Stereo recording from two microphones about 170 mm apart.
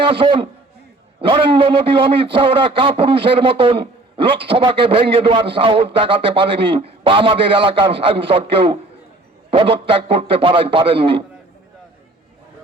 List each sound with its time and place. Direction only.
0.0 s a man's voice: 30° right (ahead or behind)